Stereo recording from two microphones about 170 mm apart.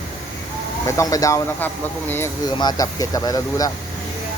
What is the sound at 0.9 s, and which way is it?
Speech, 20° left (ahead or behind).